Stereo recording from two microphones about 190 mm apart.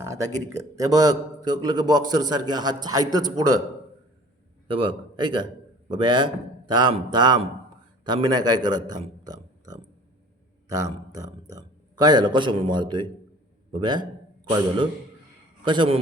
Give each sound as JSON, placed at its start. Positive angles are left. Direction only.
{"t": 0.0, "sound": "a sound", "side_deg": -15}
{"t": 0.5, "sound": "a man's voice", "side_deg": -20}
{"t": 4.7, "sound": "a man's voice", "side_deg": -25}
{"t": 15.6, "sound": "a man's voice", "side_deg": -25}